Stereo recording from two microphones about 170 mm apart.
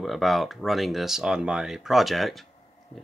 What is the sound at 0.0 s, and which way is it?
Speech, centre (ahead or behind).